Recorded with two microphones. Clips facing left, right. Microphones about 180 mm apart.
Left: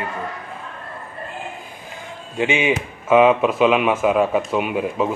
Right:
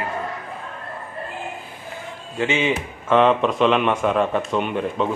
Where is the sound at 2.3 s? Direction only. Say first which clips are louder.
Left 2 dB; 15° left (ahead or behind).